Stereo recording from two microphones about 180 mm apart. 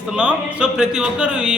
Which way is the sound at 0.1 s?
5° right (ahead or behind).